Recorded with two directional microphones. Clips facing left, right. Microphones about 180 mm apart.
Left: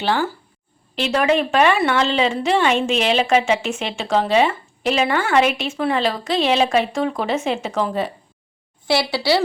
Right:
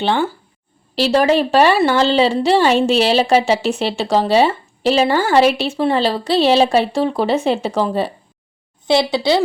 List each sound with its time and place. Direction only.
0.0 s a woman's voice: 25° right (ahead or behind)
0.9 s a woman's voice: 35° right (ahead or behind)
8.9 s a woman's voice: 20° right (ahead or behind)